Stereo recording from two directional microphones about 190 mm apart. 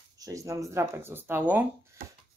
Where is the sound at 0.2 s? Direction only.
15° right (ahead or behind).